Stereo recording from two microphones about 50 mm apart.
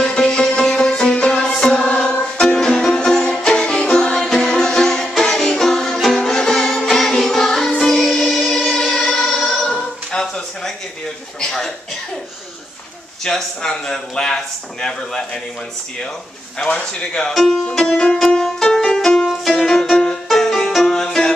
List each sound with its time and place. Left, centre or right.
0.0 s music: centre
9.4 s choir: centre
10.1 s a sound: centre
11.4 s chuckle: centre
13.2 s a sound: centre
16.5 s a man's voice: left
17.3 s speech: centre
17.6 s music: centre